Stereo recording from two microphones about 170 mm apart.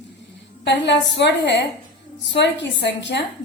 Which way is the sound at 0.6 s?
90° left.